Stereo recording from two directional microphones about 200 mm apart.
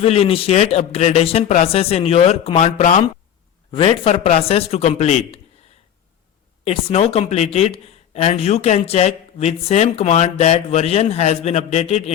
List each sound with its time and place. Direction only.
0.0 s a man's voice: 30° left (ahead or behind)
6.7 s a man's voice: 30° left (ahead or behind)